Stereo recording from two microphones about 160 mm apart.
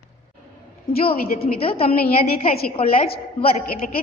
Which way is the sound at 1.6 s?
35° left (ahead or behind).